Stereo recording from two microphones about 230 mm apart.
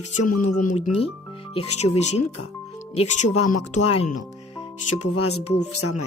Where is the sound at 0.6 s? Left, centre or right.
Left.